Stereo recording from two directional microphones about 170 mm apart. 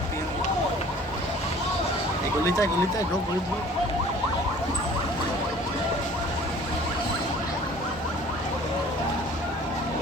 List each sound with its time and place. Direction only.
2.4 s speech: 20° left (ahead or behind)